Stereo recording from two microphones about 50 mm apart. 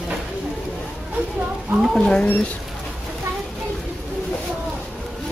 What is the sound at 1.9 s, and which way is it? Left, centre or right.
Speech, centre.